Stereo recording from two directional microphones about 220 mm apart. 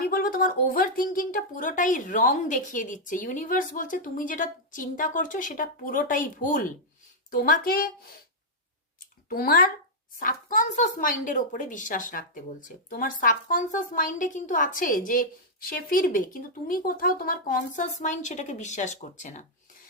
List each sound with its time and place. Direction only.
0.0 s speech: 40° left (ahead or behind)
9.3 s speech: 40° left (ahead or behind)